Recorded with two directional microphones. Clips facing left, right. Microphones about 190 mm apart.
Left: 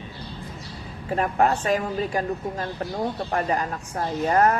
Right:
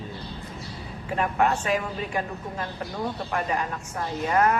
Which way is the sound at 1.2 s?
35° left (ahead or behind).